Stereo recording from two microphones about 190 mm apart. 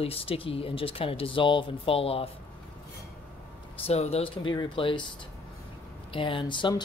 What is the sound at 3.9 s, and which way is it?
Speech, 35° left (ahead or behind).